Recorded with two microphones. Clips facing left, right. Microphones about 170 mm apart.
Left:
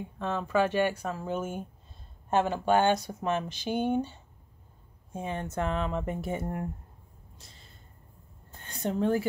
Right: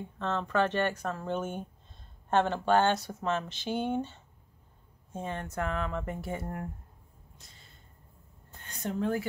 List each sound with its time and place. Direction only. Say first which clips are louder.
0.0 s speech: left 1 dB; 10° left (ahead or behind)
8.6 s a woman's voice: left 4 dB; 30° left (ahead or behind)